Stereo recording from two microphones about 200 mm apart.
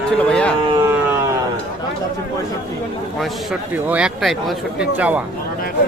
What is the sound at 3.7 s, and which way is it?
A man's voice, 5° right (ahead or behind).